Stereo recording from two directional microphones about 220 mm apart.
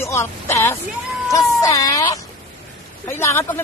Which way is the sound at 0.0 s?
10° left (ahead or behind).